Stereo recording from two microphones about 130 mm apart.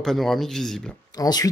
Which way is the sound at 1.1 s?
30° left (ahead or behind).